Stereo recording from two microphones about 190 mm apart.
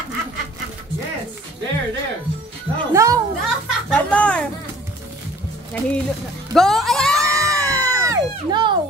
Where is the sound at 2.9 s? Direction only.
15° right (ahead or behind).